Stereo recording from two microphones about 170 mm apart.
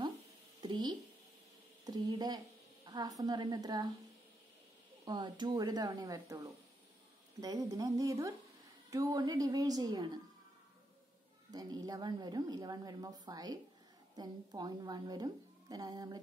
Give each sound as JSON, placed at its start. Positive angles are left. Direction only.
{"t": 0.6, "sound": "a sound", "side_deg": -25}
{"t": 1.9, "sound": "a woman's voice", "side_deg": -25}
{"t": 5.0, "sound": "a woman's voice", "side_deg": -25}
{"t": 11.5, "sound": "a woman's voice", "side_deg": -25}